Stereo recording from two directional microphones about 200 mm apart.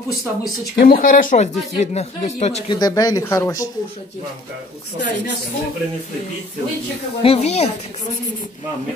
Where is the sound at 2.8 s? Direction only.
20° left (ahead or behind).